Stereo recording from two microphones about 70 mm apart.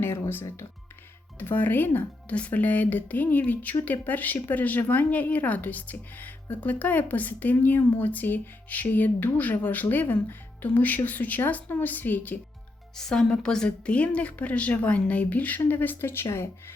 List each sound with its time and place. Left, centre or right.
0.0 s speech: left
13.0 s speech: centre; by 16.5 s left